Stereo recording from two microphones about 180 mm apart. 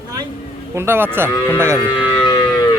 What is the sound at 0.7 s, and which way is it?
Speech, 15° right (ahead or behind).